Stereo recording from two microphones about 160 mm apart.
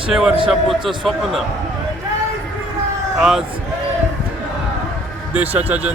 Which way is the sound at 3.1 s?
5° right (ahead or behind).